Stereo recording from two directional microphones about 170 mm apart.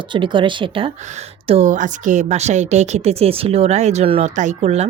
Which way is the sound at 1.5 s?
40° right (ahead or behind).